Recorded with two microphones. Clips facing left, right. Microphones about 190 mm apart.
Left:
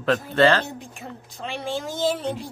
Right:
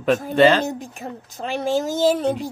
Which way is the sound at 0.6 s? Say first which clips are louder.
Right 8 dB; 40° right (ahead or behind).